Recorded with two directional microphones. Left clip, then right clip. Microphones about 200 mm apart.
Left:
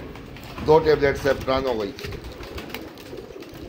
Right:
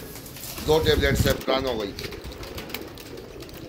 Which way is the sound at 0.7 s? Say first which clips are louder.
Left 4 dB; 20° left (ahead or behind).